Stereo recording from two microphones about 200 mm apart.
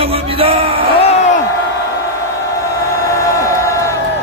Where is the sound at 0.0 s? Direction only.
30° right (ahead or behind).